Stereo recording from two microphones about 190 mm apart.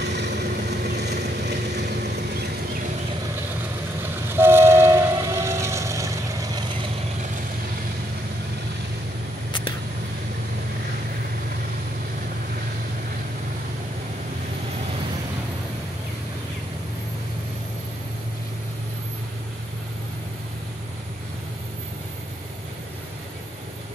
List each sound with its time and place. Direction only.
0.2 s vehicle: 60° right (ahead or behind)
4.3 s train: 10° right (ahead or behind)